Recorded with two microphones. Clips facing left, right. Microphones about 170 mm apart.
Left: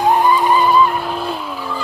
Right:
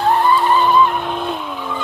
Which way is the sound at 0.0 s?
10° left (ahead or behind).